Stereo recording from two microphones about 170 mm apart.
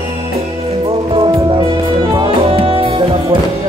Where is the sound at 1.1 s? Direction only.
30° right (ahead or behind).